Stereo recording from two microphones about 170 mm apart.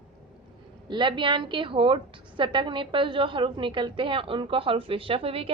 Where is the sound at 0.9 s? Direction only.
30° right (ahead or behind).